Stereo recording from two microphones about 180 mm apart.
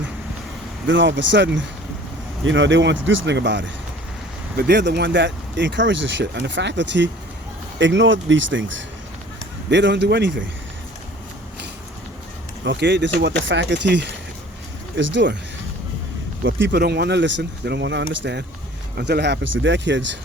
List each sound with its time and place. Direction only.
0.9 s speech: 90° right
4.5 s speech: 65° right (ahead or behind)
7.8 s speech: 90° right
9.6 s speech: 75° right (ahead or behind)
12.6 s speech: 80° right
14.9 s speech: 90° right
16.4 s speech: 90° right
18.9 s speech: 65° right (ahead or behind); by 20.1 s 85° right